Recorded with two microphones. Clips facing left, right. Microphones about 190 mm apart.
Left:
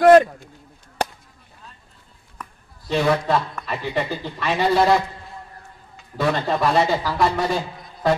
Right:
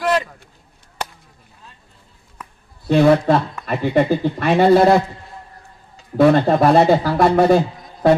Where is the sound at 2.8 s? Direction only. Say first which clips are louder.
Right 7 dB; 55° right (ahead or behind).